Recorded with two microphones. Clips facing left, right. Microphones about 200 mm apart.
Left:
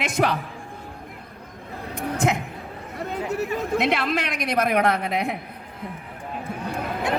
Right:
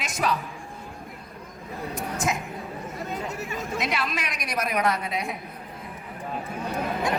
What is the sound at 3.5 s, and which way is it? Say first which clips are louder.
A woman's voice: left 5 dB; 60° left (ahead or behind).